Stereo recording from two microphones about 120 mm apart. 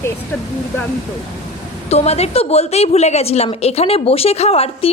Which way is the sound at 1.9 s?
60° left (ahead or behind).